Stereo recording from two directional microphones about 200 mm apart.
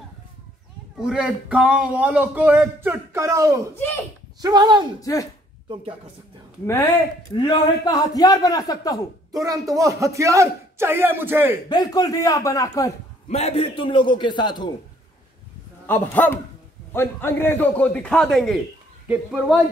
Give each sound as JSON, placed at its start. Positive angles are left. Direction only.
{"t": 0.9, "sound": "speech", "side_deg": -5}
{"t": 3.7, "sound": "a man's voice", "side_deg": 10}
{"t": 4.4, "sound": "speech", "side_deg": -20}
{"t": 5.0, "sound": "a man's voice", "side_deg": 15}
{"t": 7.3, "sound": "a man's voice", "side_deg": 20}
{"t": 9.3, "sound": "speech", "side_deg": -15}
{"t": 11.7, "sound": "a man's voice", "side_deg": 20}
{"t": 13.3, "sound": "a man's voice", "side_deg": 30}
{"t": 15.9, "sound": "a man's voice", "side_deg": 10}